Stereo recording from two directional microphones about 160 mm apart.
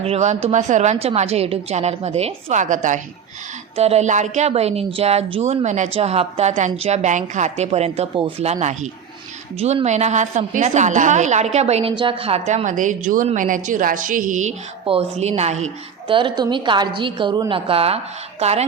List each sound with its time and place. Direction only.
0.0 s a woman's voice: 40° right (ahead or behind)
3.8 s speech: 40° right (ahead or behind)
9.6 s a woman's voice: 40° right (ahead or behind)
14.8 s a woman's voice: 40° right (ahead or behind)
16.0 s speech: 30° right (ahead or behind)